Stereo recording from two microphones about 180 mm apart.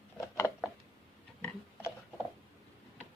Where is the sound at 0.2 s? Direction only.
15° left (ahead or behind).